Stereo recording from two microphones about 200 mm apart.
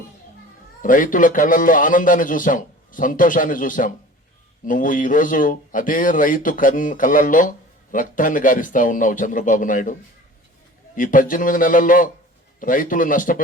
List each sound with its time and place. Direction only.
0.8 s speech: 45° left (ahead or behind)
10.9 s a man's voice: 45° left (ahead or behind)